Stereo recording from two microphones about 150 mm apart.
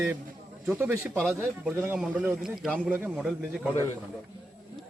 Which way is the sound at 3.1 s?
5° left (ahead or behind).